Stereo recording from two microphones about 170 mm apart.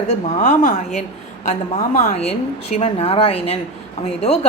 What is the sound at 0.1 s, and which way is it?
Speech, 45° left (ahead or behind).